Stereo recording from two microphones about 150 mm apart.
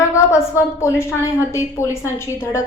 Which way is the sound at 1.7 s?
20° left (ahead or behind).